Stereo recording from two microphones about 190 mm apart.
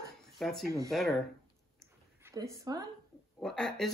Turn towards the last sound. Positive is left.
turn(degrees=0)  # may be behind; listen again after turning